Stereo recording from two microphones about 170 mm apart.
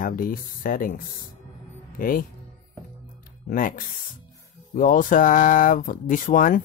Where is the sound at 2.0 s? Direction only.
55° left (ahead or behind).